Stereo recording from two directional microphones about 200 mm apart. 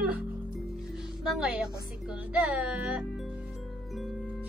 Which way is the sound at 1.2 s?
5° right (ahead or behind).